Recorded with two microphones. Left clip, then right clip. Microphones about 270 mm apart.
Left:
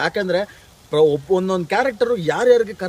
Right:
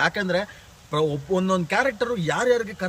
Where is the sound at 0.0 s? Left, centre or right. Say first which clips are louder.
Left 3 dB; centre.